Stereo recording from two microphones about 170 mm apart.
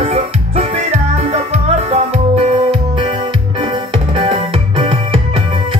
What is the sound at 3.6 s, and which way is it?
Music, 30° right (ahead or behind).